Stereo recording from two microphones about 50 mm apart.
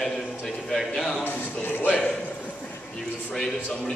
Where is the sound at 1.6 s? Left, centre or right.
Left.